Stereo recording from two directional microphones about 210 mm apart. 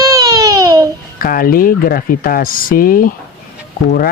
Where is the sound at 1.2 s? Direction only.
45° left (ahead or behind).